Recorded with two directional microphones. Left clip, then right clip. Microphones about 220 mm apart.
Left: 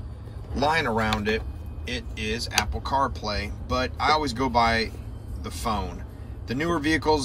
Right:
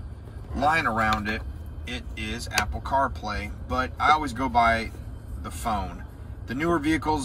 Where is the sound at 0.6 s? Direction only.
5° left (ahead or behind).